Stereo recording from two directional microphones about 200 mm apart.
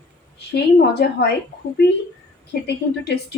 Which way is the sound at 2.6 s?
55° left (ahead or behind).